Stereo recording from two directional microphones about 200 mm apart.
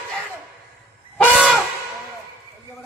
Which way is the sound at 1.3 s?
5° right (ahead or behind).